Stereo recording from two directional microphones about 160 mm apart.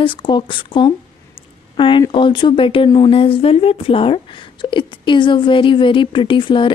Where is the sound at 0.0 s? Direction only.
30° left (ahead or behind).